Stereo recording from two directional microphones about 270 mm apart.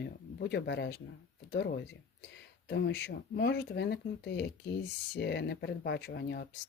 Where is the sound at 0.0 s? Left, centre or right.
Left.